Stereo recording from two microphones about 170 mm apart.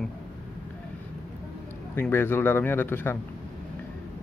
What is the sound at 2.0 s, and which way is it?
Speech, 10° left (ahead or behind).